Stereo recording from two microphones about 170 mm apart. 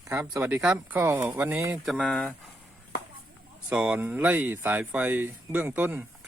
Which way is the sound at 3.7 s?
10° right (ahead or behind).